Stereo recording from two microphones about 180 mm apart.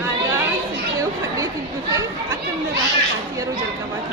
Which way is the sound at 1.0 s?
20° right (ahead or behind).